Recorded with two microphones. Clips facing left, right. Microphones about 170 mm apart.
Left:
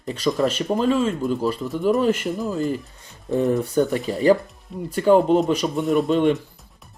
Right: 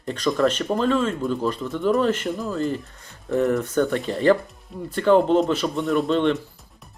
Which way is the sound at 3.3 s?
20° left (ahead or behind).